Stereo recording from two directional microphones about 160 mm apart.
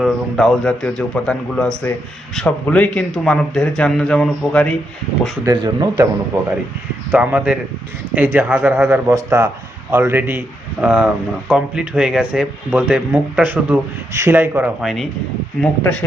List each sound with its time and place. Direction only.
0.0 s speech: centre (ahead or behind)
5.5 s speech: 25° right (ahead or behind)
7.1 s speech: 10° right (ahead or behind)
14.8 s speech: centre (ahead or behind)